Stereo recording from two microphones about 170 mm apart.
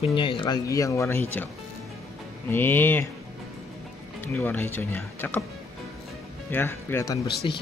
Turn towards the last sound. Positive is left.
turn(degrees=30)  # may be behind; listen again after turning